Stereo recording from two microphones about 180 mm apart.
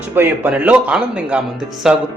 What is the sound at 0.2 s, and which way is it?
Speech, 10° right (ahead or behind).